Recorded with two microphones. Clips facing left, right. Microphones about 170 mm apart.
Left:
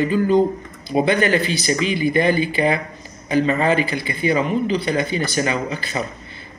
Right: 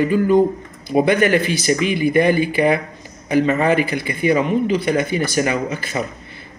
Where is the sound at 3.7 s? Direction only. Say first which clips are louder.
Right 2 dB; 25° left (ahead or behind).